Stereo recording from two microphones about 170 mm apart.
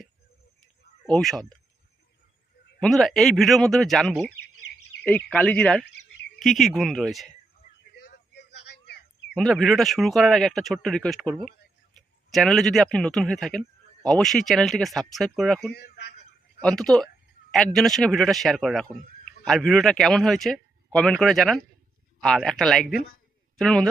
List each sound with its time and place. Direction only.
1.1 s a man's voice: 5° left (ahead or behind)
2.8 s a man's voice: centre (ahead or behind)
8.0 s a sound: 80° left
9.3 s a man's voice: 5° left (ahead or behind)